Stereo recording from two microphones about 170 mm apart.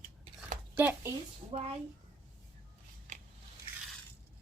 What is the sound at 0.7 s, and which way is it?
Speech, 10° right (ahead or behind).